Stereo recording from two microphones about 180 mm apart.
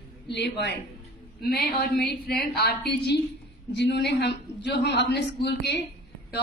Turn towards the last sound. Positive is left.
turn(degrees=70)  # may be behind; listen again after turning